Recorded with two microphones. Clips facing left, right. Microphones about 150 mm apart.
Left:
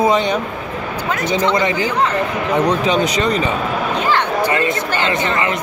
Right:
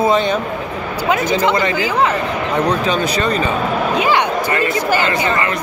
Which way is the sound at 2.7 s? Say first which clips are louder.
Left 1 dB; 20° left (ahead or behind).